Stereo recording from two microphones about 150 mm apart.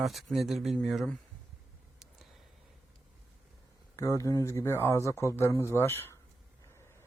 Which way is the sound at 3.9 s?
20° left (ahead or behind).